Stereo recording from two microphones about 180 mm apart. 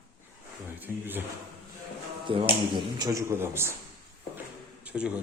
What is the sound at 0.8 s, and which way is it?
Speech, 10° right (ahead or behind).